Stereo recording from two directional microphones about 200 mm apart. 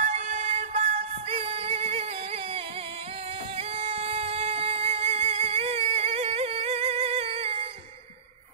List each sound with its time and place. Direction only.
0.0 s music: 35° right (ahead or behind)